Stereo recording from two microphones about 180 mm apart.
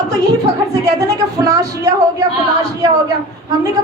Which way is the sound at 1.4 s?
20° right (ahead or behind).